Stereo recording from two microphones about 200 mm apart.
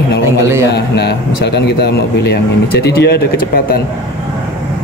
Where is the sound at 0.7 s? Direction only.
55° left (ahead or behind).